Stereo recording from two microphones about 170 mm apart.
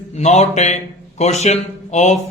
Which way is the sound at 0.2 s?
40° left (ahead or behind).